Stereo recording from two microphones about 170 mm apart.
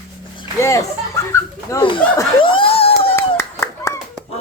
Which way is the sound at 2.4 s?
30° left (ahead or behind).